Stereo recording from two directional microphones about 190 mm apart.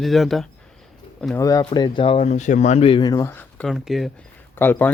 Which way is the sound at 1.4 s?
20° left (ahead or behind).